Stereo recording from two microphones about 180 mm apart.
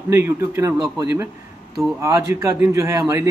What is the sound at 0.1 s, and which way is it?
A man's voice, 15° right (ahead or behind).